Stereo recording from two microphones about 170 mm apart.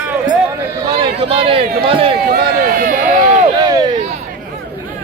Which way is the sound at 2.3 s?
60° right (ahead or behind).